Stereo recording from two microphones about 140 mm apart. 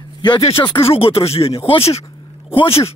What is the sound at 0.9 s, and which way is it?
Speech, 45° left (ahead or behind).